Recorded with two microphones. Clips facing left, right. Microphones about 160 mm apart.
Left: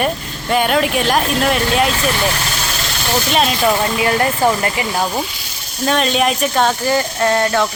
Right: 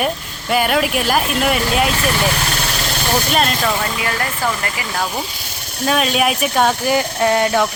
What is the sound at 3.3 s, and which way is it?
Speech, centre (ahead or behind).